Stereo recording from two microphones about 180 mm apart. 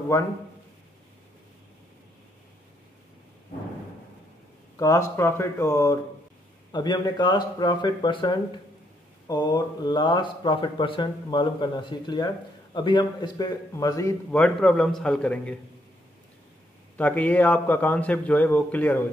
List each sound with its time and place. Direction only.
4.7 s a man's voice: 15° left (ahead or behind)
16.9 s a man's voice: 10° left (ahead or behind)